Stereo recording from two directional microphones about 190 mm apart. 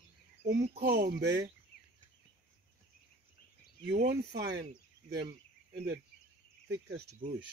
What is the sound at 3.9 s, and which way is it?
Speech, 60° right (ahead or behind).